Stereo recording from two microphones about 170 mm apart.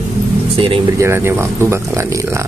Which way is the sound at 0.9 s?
15° right (ahead or behind).